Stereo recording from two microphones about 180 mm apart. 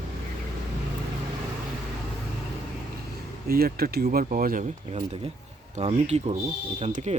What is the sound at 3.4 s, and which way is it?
Speech, 55° right (ahead or behind).